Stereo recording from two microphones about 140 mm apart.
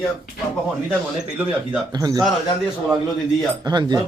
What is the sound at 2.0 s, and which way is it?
Speech, 25° right (ahead or behind).